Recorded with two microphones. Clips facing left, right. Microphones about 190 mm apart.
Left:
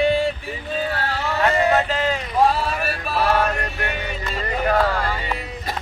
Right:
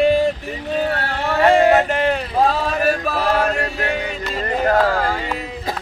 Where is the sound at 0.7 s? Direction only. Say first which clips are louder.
Right 4 dB; 60° right (ahead or behind).